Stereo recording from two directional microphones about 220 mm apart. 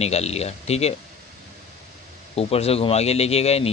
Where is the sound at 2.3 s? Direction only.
25° left (ahead or behind).